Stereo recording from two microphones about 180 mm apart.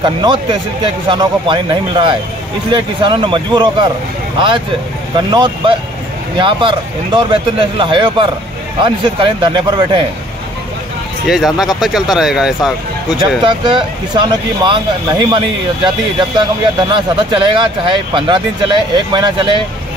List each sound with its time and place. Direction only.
0.0 s speech: 25° right (ahead or behind)
5.1 s speech: 25° right (ahead or behind)
11.2 s speech: centre (ahead or behind)
13.4 s speech: 25° right (ahead or behind)